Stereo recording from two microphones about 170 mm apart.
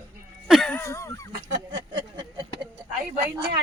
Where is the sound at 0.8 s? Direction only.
20° left (ahead or behind).